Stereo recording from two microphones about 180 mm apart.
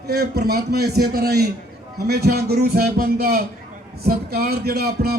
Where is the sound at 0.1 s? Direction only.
60° right (ahead or behind).